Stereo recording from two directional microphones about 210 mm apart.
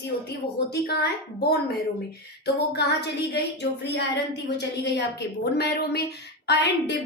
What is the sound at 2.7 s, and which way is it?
A woman's voice, 55° left (ahead or behind).